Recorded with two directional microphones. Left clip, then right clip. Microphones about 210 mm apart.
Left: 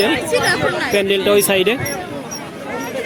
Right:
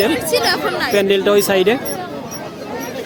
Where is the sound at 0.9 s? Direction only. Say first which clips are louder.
Right 1 dB; centre (ahead or behind).